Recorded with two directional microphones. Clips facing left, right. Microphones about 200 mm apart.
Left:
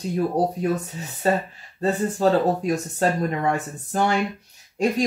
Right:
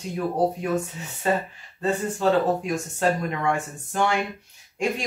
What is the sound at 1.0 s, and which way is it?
Speech, 40° left (ahead or behind).